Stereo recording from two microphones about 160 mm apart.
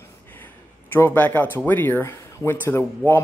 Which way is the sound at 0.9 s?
15° left (ahead or behind).